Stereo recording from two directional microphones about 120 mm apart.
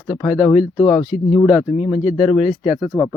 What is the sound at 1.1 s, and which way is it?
Speech, 90° left.